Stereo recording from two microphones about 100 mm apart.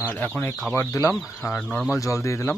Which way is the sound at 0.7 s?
25° left (ahead or behind).